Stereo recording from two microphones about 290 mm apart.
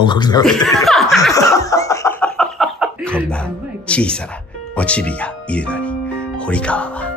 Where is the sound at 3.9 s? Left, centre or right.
Centre.